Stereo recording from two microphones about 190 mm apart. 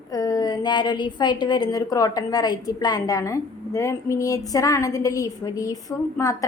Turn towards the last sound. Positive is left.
turn(degrees=15)  # may be behind; listen again after turning